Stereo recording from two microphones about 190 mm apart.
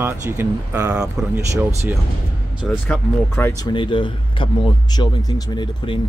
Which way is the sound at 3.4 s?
15° left (ahead or behind).